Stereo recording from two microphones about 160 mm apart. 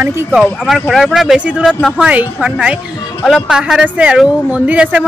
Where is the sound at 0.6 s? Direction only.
Centre (ahead or behind).